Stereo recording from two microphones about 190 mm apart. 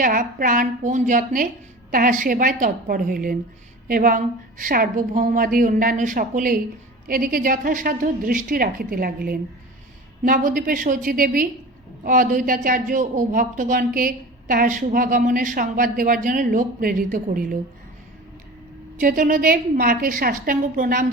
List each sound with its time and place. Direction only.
0.0 s speech: 45° right (ahead or behind)
18.9 s speech: 45° right (ahead or behind)